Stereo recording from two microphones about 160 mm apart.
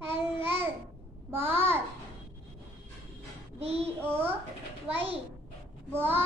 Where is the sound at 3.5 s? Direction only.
40° right (ahead or behind).